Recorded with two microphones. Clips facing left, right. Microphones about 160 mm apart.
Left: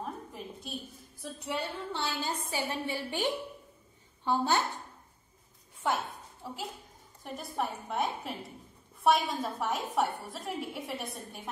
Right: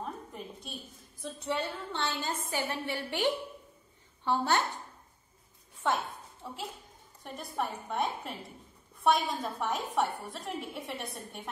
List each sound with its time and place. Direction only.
0.0 s a sound: 5° left (ahead or behind)
1.2 s a woman's voice: 10° left (ahead or behind)
4.2 s a woman's voice: 15° left (ahead or behind)
6.4 s a woman's voice: centre (ahead or behind)